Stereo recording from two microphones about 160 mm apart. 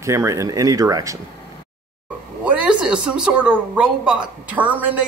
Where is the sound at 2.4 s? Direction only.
10° right (ahead or behind).